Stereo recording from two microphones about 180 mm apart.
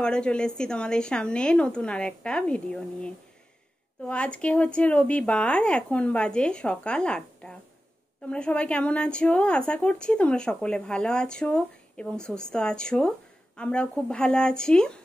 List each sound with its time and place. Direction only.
0.0 s speech: 5° left (ahead or behind)